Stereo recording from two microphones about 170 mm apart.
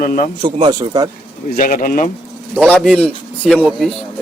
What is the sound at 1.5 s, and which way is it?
Speech, 55° left (ahead or behind).